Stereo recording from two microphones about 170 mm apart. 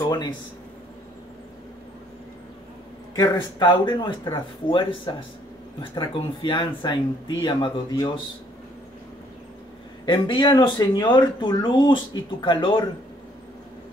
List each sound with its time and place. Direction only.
0.0 s speech: 25° left (ahead or behind)
3.2 s speech: 25° left (ahead or behind)
10.0 s speech: 30° left (ahead or behind)